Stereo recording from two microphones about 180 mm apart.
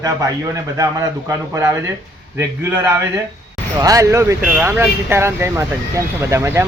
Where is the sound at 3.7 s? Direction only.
20° right (ahead or behind).